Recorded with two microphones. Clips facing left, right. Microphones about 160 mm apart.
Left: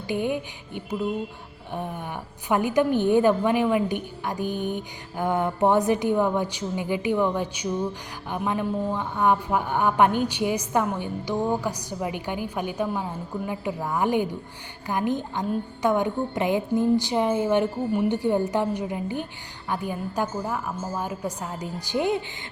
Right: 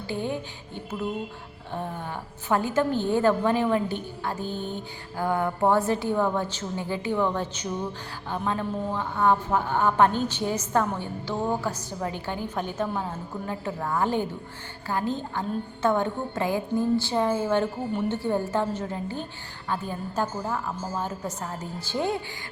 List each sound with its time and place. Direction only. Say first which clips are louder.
0.1 s a woman's voice: left 4 dB; 15° left (ahead or behind)